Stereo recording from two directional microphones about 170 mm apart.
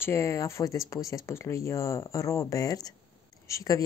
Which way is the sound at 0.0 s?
15° left (ahead or behind).